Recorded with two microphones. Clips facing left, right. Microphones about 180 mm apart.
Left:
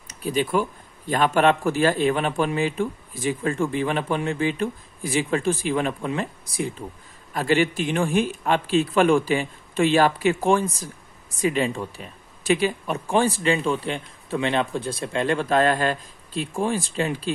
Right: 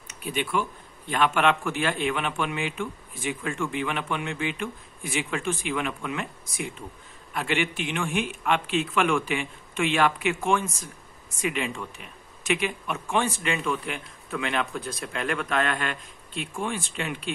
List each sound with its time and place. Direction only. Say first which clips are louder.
0.1 s a man's voice: left 5 dB; 35° left (ahead or behind)